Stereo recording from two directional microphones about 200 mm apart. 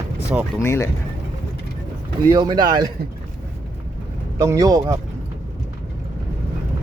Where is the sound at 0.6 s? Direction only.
15° left (ahead or behind).